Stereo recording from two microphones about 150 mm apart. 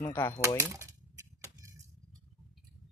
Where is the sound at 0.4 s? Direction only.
20° right (ahead or behind).